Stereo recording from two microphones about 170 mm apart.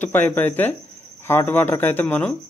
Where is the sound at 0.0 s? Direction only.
10° left (ahead or behind).